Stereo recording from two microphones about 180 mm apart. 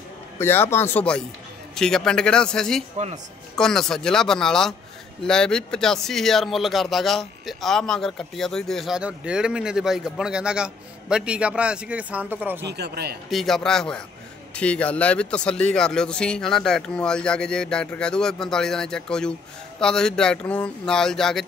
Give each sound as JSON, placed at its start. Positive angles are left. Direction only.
{"t": 0.4, "sound": "speech", "side_deg": 15}
{"t": 12.6, "sound": "a man's voice", "side_deg": -65}
{"t": 13.3, "sound": "speech", "side_deg": 0}